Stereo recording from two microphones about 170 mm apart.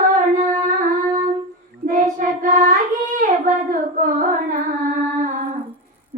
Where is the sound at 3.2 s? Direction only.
50° right (ahead or behind).